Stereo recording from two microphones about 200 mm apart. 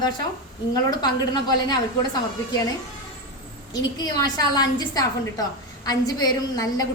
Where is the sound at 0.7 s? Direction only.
20° left (ahead or behind).